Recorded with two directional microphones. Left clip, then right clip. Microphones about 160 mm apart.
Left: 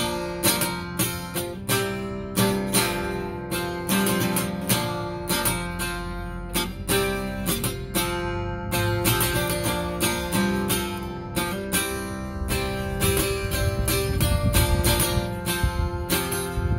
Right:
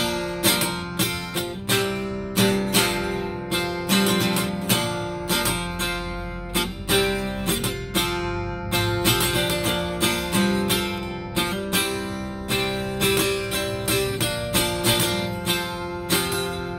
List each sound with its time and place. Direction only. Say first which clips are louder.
0.0 s music: right 2 dB; 40° left (ahead or behind)